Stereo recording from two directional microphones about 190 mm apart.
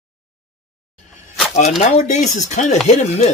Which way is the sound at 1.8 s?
40° left (ahead or behind).